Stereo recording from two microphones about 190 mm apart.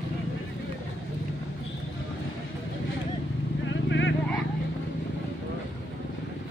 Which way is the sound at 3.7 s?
75° left (ahead or behind).